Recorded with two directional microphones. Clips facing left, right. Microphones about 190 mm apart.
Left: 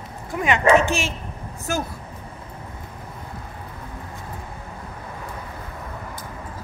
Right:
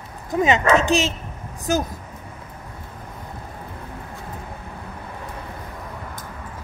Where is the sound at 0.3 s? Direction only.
20° right (ahead or behind).